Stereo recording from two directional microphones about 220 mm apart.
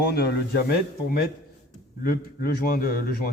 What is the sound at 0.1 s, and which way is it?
A man's voice, 50° left (ahead or behind).